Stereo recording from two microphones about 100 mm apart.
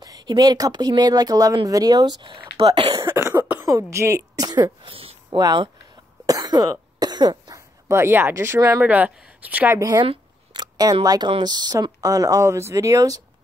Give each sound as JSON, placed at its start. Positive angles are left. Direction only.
{"t": 0.0, "sound": "a sound", "side_deg": -40}
{"t": 0.3, "sound": "speech", "side_deg": -45}
{"t": 3.0, "sound": "cough", "side_deg": -30}
{"t": 3.6, "sound": "a woman's voice", "side_deg": -30}
{"t": 4.8, "sound": "a sound", "side_deg": -65}
{"t": 6.2, "sound": "cough", "side_deg": -40}
{"t": 7.9, "sound": "speech", "side_deg": -25}
{"t": 9.8, "sound": "a woman's voice", "side_deg": -35}
{"t": 10.0, "sound": "speech", "side_deg": -50}